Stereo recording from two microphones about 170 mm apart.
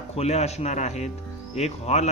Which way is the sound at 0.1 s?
40° left (ahead or behind).